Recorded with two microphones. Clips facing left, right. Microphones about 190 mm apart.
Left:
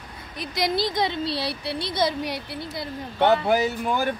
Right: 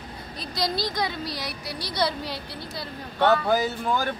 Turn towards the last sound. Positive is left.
turn(degrees=15)  # may be behind; listen again after turning